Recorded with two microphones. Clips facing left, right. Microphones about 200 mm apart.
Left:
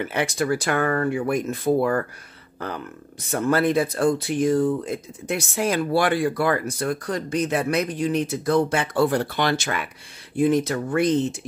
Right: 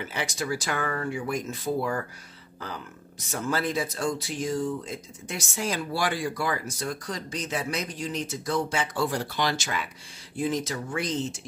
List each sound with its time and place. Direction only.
0.0 s speech: 60° left (ahead or behind)